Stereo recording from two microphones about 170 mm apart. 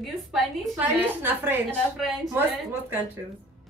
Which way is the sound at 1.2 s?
10° right (ahead or behind).